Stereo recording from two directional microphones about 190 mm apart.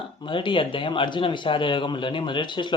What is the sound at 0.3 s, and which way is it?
A man's voice, 25° left (ahead or behind).